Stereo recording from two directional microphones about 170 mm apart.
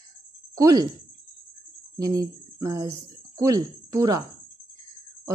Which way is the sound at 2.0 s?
20° right (ahead or behind).